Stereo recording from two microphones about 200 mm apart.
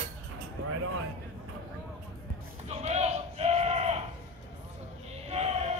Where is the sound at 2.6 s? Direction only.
35° right (ahead or behind).